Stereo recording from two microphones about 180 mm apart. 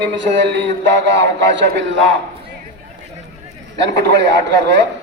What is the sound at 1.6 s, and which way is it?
Speech, 90° right.